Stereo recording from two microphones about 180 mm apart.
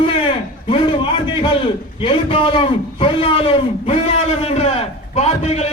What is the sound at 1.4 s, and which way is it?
A man's voice, 30° left (ahead or behind).